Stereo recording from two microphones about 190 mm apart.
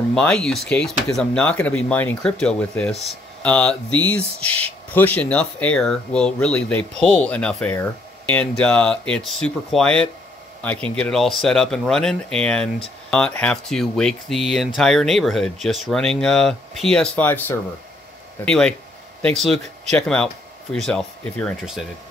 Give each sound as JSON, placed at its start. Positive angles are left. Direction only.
{"t": 0.1, "sound": "speech", "side_deg": 5}